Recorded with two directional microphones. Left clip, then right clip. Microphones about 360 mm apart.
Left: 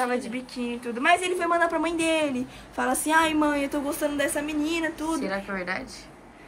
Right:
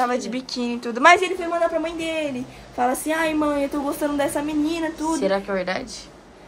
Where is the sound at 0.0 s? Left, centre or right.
Centre.